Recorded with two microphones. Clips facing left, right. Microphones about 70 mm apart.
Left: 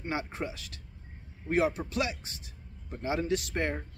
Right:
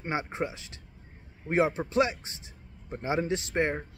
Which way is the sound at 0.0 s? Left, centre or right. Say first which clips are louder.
Right 3 dB; right.